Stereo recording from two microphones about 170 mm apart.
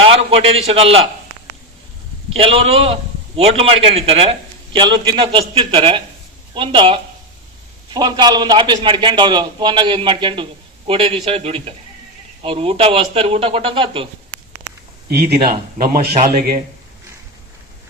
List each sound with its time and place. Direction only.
0.1 s a man's voice: 35° right (ahead or behind)
2.3 s a man's voice: 35° right (ahead or behind)
15.1 s a man's voice: 70° right (ahead or behind)